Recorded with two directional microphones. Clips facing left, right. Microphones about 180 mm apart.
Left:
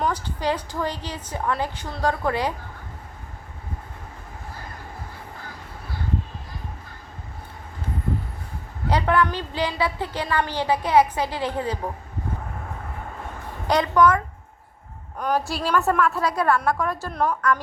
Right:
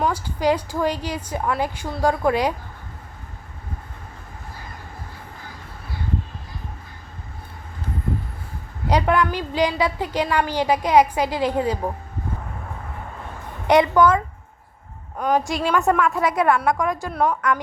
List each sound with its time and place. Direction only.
0.0 s a woman's voice: 10° right (ahead or behind)
8.9 s a woman's voice: 15° right (ahead or behind)
13.7 s a woman's voice: 25° right (ahead or behind)
15.4 s a woman's voice: 15° right (ahead or behind)
15.9 s a woman's voice: centre (ahead or behind)
16.1 s a woman's voice: 20° right (ahead or behind)